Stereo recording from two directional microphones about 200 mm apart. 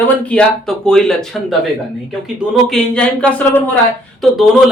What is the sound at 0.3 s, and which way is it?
Speech, 5° left (ahead or behind).